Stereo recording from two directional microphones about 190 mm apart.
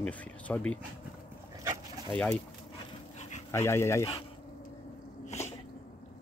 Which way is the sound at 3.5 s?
15° left (ahead or behind).